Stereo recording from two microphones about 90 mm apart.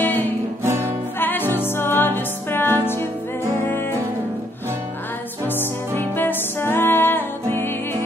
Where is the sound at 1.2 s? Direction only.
20° left (ahead or behind).